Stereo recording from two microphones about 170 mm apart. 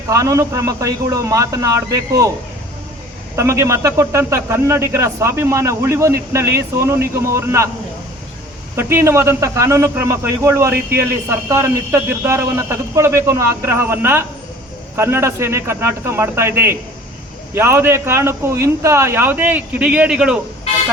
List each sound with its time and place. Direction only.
0.1 s a man's voice: 20° right (ahead or behind)
3.3 s a man's voice: 15° right (ahead or behind)
8.7 s a man's voice: 15° right (ahead or behind)